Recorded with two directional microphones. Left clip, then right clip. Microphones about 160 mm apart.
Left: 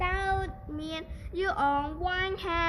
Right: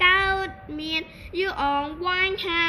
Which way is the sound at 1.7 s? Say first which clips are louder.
Right 6 dB; 65° left (ahead or behind).